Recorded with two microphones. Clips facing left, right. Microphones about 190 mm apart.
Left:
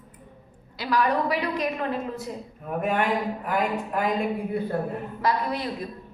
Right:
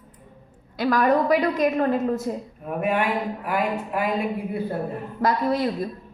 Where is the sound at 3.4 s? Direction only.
5° right (ahead or behind).